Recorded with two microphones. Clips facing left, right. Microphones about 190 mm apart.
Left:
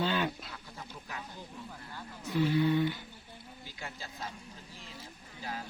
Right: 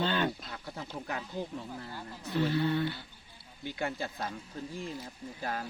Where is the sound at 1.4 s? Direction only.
80° right.